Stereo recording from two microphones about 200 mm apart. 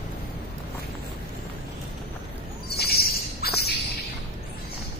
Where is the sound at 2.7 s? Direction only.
50° left (ahead or behind).